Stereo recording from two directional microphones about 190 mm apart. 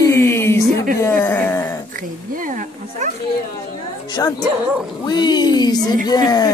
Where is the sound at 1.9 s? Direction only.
45° right (ahead or behind).